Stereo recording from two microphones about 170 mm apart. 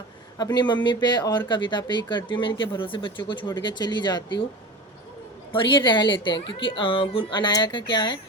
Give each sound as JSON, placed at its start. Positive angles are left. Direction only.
{"t": 0.3, "sound": "a woman's voice", "side_deg": 25}
{"t": 5.5, "sound": "a woman's voice", "side_deg": 30}